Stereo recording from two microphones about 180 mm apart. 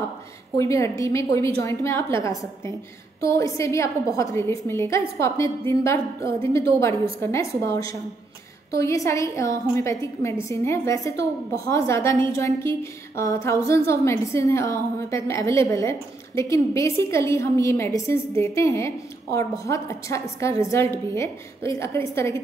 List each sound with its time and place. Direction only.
0.6 s a woman's voice: 15° left (ahead or behind)